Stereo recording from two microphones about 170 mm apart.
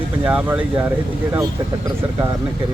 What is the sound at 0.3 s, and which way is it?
Speech, 10° right (ahead or behind).